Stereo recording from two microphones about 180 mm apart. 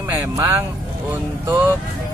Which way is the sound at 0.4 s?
10° right (ahead or behind).